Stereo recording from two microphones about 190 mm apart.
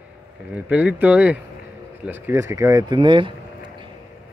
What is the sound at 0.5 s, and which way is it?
Speech, 5° right (ahead or behind).